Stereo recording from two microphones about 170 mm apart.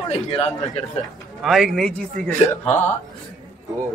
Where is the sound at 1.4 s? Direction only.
Centre (ahead or behind).